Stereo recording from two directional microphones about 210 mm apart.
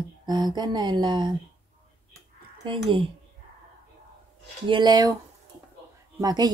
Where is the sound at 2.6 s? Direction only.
25° right (ahead or behind).